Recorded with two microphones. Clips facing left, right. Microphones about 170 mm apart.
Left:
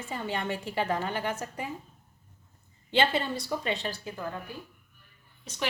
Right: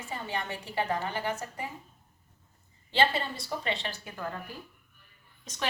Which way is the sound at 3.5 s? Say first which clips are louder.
Left 2 dB; 50° left (ahead or behind).